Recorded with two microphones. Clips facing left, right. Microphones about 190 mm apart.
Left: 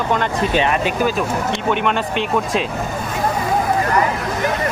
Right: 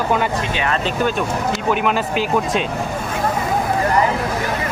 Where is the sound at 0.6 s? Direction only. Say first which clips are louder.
Left 2 dB; 15° left (ahead or behind).